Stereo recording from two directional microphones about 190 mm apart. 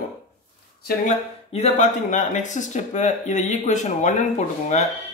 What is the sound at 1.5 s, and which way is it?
Speech, 35° left (ahead or behind).